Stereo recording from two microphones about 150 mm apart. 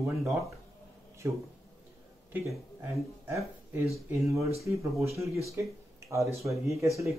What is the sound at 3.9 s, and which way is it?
Speech, 20° right (ahead or behind).